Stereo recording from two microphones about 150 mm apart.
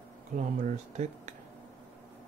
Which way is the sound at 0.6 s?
55° right (ahead or behind).